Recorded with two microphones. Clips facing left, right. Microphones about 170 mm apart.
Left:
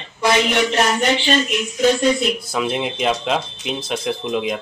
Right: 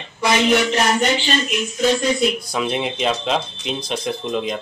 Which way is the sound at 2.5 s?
Centre (ahead or behind).